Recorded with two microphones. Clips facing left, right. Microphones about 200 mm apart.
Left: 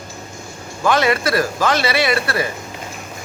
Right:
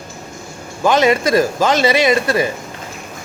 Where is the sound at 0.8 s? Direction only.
20° right (ahead or behind).